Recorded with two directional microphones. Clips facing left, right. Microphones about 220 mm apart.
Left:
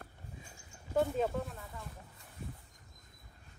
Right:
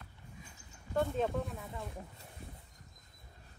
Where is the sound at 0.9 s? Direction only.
5° left (ahead or behind).